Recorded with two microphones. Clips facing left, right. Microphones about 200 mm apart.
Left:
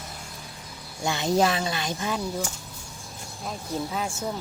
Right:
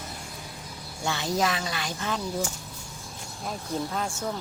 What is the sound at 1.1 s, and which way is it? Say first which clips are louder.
Speech: left 4 dB; 20° left (ahead or behind).